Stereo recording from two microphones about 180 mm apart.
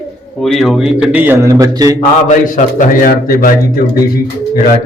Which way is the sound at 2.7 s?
50° left (ahead or behind).